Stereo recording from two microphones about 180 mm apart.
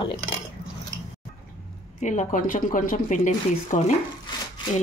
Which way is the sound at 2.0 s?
45° left (ahead or behind).